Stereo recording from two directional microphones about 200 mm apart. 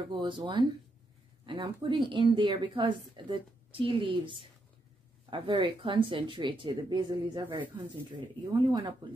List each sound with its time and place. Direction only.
0.1 s a woman's voice: 25° right (ahead or behind)
8.5 s a woman's voice: 25° right (ahead or behind)